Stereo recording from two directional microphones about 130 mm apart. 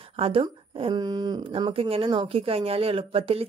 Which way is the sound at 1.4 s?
45° right (ahead or behind).